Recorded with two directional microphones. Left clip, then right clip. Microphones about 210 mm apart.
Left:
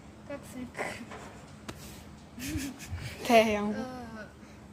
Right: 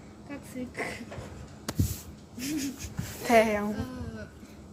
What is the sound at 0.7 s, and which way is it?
Speech, 20° left (ahead or behind).